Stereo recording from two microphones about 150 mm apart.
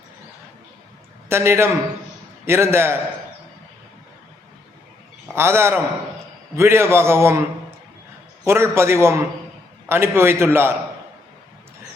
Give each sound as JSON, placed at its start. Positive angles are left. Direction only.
{"t": 1.3, "sound": "a man's voice", "side_deg": -15}
{"t": 5.3, "sound": "a man's voice", "side_deg": -15}
{"t": 8.4, "sound": "a man's voice", "side_deg": -15}